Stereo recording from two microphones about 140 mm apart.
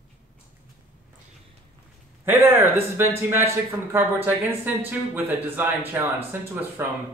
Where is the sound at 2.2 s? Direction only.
15° right (ahead or behind).